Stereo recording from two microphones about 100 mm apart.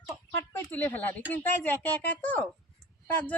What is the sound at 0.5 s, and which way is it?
A man's voice, 20° left (ahead or behind).